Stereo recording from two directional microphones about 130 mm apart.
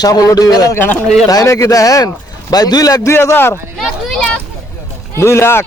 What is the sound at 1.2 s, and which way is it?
A man's voice, 25° left (ahead or behind).